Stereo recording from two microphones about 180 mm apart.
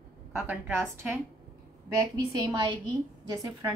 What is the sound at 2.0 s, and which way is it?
A woman's voice, 20° right (ahead or behind).